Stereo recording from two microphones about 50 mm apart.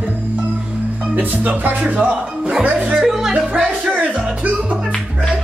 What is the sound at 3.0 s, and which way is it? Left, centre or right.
Music, centre.